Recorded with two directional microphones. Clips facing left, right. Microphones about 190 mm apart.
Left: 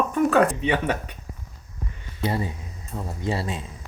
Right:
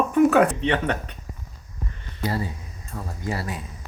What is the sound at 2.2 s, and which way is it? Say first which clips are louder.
Speech: left 1 dB; 20° left (ahead or behind).